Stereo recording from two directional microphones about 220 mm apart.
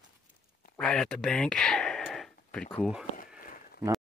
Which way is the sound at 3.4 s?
40° left (ahead or behind).